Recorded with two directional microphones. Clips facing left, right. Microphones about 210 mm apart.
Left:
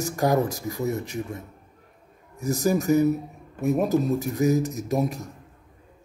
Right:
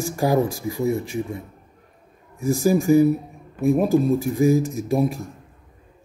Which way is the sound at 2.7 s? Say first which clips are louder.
Right 5 dB; 10° right (ahead or behind).